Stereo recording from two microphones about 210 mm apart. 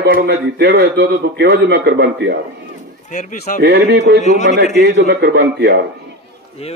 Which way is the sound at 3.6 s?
55° right (ahead or behind).